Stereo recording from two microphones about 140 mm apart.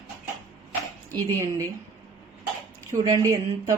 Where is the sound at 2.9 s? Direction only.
25° right (ahead or behind).